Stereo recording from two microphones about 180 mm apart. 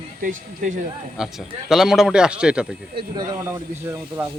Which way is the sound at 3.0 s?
25° right (ahead or behind).